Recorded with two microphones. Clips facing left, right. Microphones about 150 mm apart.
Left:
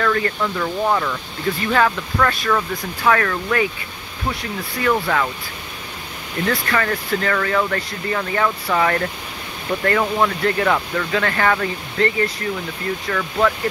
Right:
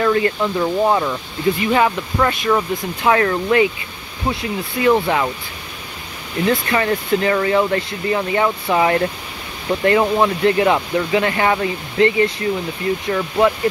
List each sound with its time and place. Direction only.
0.0 s speech: 20° right (ahead or behind)
6.4 s speech: 20° right (ahead or behind)